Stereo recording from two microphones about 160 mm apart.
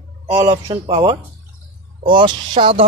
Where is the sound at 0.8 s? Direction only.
35° right (ahead or behind).